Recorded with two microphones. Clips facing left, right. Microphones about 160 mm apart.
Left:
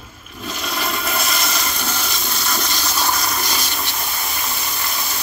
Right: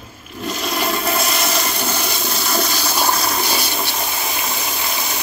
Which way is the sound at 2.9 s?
10° right (ahead or behind).